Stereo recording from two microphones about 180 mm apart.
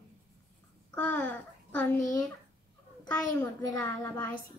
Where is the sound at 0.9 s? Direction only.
5° left (ahead or behind).